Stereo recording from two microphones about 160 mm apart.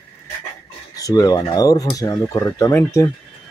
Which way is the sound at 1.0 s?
20° left (ahead or behind).